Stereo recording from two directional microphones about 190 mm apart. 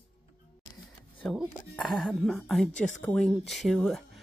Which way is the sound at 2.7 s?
40° left (ahead or behind).